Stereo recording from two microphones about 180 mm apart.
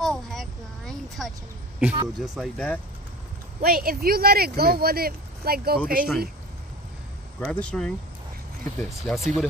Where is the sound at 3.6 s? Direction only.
55° right (ahead or behind).